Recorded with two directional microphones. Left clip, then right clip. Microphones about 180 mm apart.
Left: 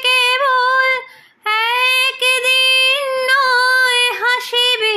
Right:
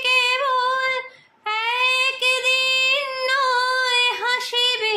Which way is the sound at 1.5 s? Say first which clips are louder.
Left 6 dB; 35° left (ahead or behind).